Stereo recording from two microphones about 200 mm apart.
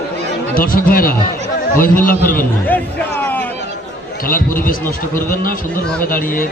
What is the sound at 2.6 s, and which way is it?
Music, 10° left (ahead or behind).